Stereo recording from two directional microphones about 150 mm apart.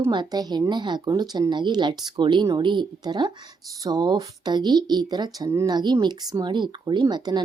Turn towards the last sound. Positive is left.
turn(degrees=-30)  # may be behind; listen again after turning